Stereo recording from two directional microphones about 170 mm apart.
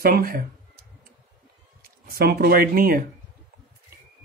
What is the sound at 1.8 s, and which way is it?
Speech, 60° right (ahead or behind).